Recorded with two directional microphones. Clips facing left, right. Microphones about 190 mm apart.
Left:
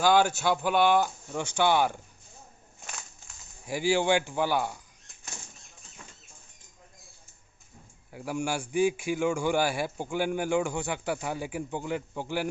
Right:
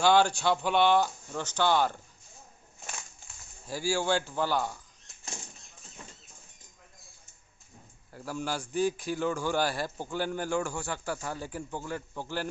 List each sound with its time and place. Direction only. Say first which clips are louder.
0.0 s a man's voice: even; 5° left (ahead or behind)
3.6 s a man's voice: left 4 dB; 20° left (ahead or behind)
8.1 s a man's voice: left 3 dB; 10° left (ahead or behind)